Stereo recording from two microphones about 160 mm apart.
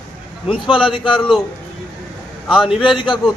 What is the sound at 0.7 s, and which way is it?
Speech, 30° left (ahead or behind).